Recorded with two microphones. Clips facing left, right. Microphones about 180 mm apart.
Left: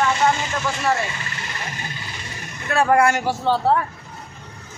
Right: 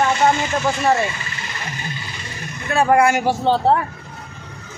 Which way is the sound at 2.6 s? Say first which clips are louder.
Right 2 dB; 5° right (ahead or behind).